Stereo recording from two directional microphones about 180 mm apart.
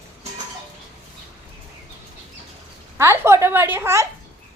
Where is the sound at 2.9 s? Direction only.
15° right (ahead or behind).